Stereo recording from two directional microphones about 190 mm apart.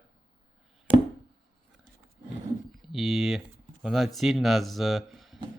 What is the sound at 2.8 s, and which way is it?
Speech, centre (ahead or behind).